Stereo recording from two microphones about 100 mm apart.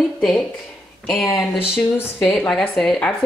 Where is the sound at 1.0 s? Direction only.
15° left (ahead or behind).